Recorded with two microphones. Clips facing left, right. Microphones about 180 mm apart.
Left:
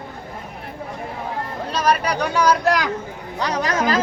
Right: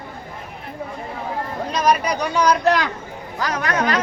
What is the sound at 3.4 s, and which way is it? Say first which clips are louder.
Speech: left 1 dB; 30° left (ahead or behind).